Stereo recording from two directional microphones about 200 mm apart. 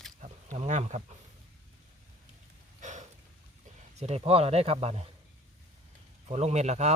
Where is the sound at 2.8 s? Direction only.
40° right (ahead or behind).